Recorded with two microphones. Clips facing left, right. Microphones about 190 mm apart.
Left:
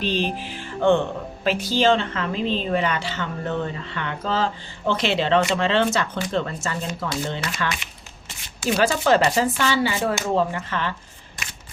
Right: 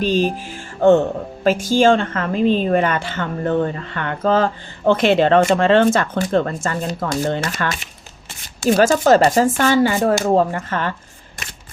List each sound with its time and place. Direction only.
0.0 s music: 45° right (ahead or behind)
1.5 s a woman's voice: 45° right (ahead or behind)